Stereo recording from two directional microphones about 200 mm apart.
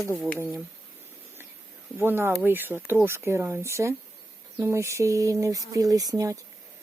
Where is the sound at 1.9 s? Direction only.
10° right (ahead or behind).